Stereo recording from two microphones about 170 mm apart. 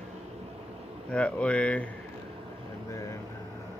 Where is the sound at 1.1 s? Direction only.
5° left (ahead or behind).